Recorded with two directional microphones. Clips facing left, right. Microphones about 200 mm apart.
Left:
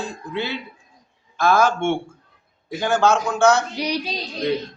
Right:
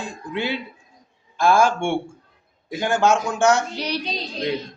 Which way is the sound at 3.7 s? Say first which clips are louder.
Left 2 dB; 10° left (ahead or behind).